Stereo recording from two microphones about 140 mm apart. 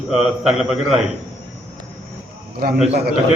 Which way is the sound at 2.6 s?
90° right.